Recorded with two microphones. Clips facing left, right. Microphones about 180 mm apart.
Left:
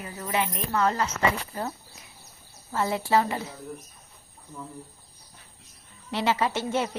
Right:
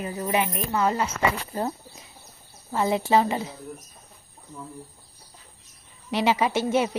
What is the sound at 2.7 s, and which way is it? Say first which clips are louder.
Speech: right 3 dB; 20° right (ahead or behind).